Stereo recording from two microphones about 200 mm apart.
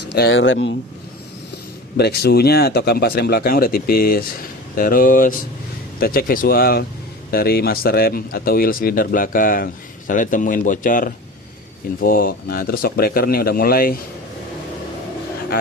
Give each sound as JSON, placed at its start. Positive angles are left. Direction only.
{"t": 0.0, "sound": "speech", "side_deg": 55}
{"t": 2.0, "sound": "speech", "side_deg": 55}